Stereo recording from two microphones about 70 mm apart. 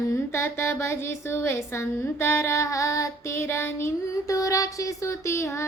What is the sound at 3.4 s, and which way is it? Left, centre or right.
Speech, left.